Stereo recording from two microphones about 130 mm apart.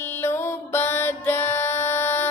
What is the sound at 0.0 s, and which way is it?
Music, 15° left (ahead or behind).